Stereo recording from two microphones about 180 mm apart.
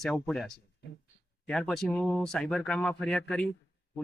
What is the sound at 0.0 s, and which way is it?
Speech, 5° left (ahead or behind).